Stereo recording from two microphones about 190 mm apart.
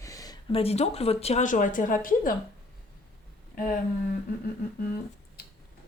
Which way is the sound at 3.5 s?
45° left (ahead or behind).